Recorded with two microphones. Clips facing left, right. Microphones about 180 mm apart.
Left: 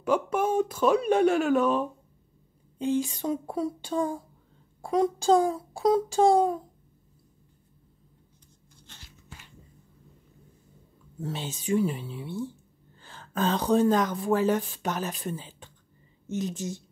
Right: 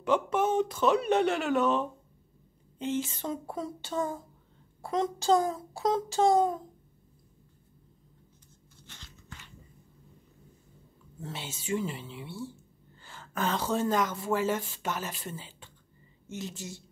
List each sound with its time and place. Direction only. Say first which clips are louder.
0.0 s speech: left 1 dB; 10° left (ahead or behind)
5.2 s speech: left 1 dB; 10° left (ahead or behind)
11.1 s a woman's voice: left 6 dB; 15° left (ahead or behind)